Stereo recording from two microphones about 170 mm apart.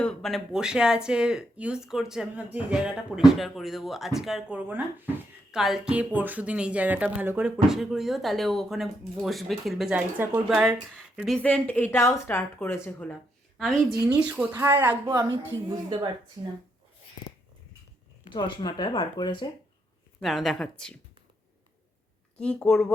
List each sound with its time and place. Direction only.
0.0 s speech: 5° left (ahead or behind)
14.3 s a woman's voice: 10° right (ahead or behind)
18.3 s speech: 30° left (ahead or behind)
20.2 s speech: centre (ahead or behind)
22.4 s speech: 5° left (ahead or behind)